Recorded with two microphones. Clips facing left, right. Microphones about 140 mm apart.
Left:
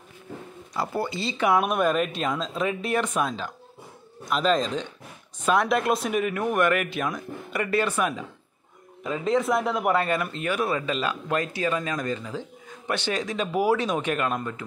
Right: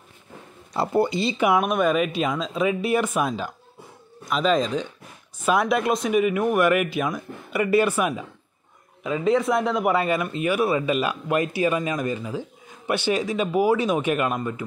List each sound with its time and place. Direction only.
0.7 s speech: 20° right (ahead or behind)
1.5 s speech: centre (ahead or behind)